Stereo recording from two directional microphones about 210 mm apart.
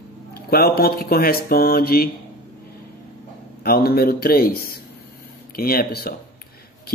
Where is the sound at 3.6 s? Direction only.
45° left (ahead or behind).